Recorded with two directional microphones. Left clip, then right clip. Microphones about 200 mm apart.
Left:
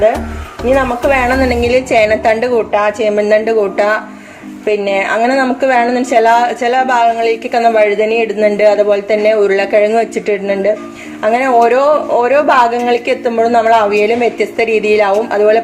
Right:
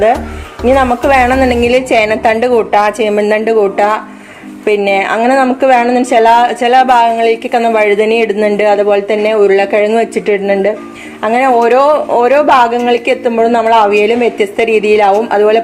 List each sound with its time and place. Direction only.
0.6 s a woman's voice: 30° right (ahead or behind)